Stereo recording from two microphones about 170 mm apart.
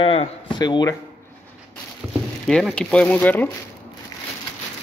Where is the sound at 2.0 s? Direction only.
5° right (ahead or behind).